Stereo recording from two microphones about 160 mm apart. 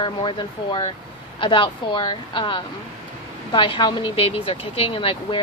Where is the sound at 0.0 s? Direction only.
30° left (ahead or behind).